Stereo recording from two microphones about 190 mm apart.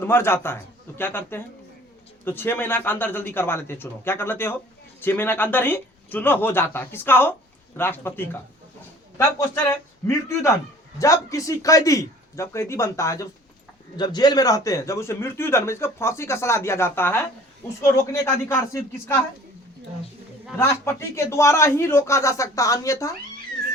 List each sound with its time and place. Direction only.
0.0 s speech: 10° left (ahead or behind)
10.1 s speech: 15° left (ahead or behind)
20.6 s speech: 15° left (ahead or behind)